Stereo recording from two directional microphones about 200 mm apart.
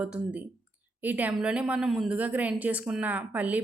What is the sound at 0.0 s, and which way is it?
A woman's voice, 5° right (ahead or behind).